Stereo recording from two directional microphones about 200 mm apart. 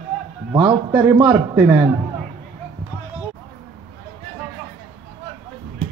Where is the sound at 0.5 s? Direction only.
10° right (ahead or behind).